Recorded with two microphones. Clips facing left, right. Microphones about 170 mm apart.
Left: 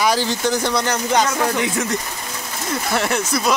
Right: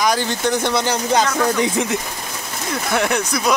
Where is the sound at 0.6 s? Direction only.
20° right (ahead or behind).